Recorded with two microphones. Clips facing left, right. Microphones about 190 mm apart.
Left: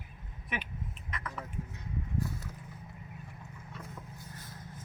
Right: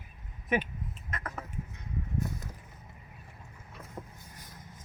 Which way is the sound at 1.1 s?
45° right (ahead or behind).